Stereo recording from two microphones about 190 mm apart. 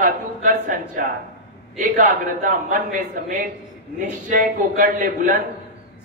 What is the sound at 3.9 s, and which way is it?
A man's voice, 45° right (ahead or behind).